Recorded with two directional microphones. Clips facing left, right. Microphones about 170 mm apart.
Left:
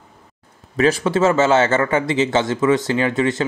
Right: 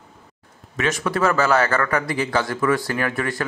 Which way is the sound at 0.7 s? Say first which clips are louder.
Left 6 dB; 30° left (ahead or behind).